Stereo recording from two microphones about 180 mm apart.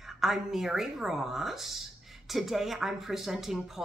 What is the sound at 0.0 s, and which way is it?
A woman's voice, centre (ahead or behind).